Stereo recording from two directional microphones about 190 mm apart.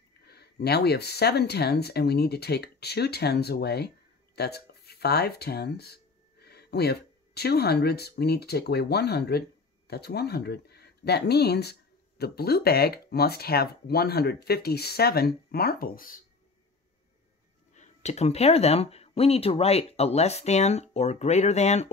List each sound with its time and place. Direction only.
0.2 s speech: 55° left (ahead or behind)
17.7 s speech: 35° left (ahead or behind)